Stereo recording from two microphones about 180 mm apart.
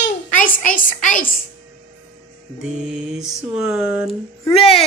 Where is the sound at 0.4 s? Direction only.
45° left (ahead or behind).